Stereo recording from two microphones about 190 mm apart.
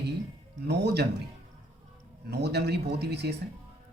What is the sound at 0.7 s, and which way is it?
Speech, 60° right (ahead or behind).